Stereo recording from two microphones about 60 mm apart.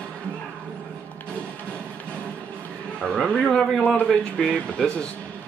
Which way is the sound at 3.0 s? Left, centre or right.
Centre.